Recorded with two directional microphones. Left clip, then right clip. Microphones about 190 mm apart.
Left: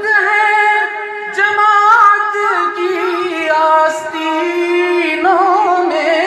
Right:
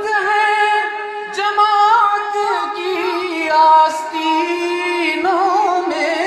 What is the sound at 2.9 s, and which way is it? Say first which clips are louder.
Music: left 3 dB; 25° left (ahead or behind).